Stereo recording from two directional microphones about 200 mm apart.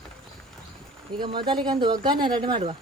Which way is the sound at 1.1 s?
20° right (ahead or behind).